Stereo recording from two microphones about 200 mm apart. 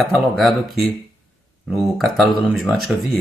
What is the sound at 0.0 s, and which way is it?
Speech, centre (ahead or behind).